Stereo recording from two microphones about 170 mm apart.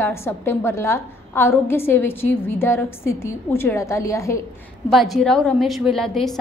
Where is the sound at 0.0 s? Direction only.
15° left (ahead or behind).